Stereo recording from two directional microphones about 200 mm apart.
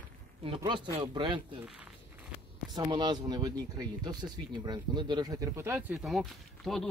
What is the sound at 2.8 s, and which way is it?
Speech, 20° right (ahead or behind).